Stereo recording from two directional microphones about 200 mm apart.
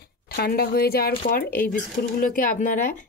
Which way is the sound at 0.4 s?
50° left (ahead or behind).